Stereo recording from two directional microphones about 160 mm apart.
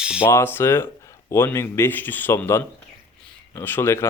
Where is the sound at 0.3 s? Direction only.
15° left (ahead or behind).